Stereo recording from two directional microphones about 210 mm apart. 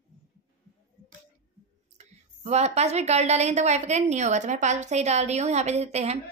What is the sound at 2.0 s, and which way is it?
A woman's voice, 30° right (ahead or behind).